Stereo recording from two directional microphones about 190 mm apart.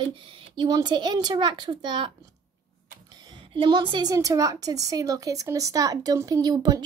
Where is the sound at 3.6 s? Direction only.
25° right (ahead or behind).